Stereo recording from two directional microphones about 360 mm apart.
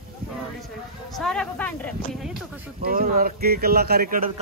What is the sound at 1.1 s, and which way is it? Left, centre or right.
Speech, centre.